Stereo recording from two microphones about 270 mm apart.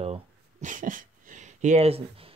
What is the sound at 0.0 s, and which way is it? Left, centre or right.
Dog, right.